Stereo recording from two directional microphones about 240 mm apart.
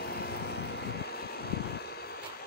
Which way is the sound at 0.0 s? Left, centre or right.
Left.